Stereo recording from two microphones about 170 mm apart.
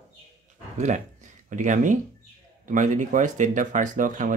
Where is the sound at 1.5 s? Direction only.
45° right (ahead or behind).